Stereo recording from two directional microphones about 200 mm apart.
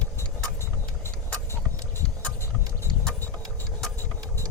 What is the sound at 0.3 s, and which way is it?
Vehicle, 10° left (ahead or behind).